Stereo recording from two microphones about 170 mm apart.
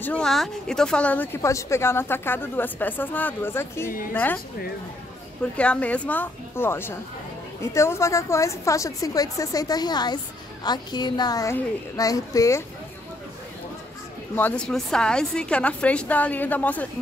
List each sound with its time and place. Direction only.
0.0 s speech: 5° left (ahead or behind)
5.4 s a woman's voice: 5° left (ahead or behind)
14.3 s speech: 10° left (ahead or behind)